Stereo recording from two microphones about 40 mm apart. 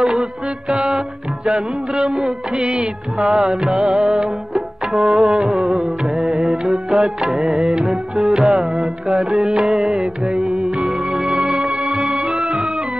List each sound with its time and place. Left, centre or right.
0.0 s music: right